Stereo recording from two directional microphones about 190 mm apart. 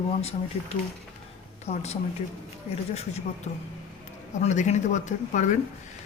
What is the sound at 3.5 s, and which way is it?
A woman's voice, 40° left (ahead or behind).